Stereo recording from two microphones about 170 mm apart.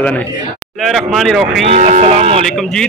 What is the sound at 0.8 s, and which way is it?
Speech, centre (ahead or behind).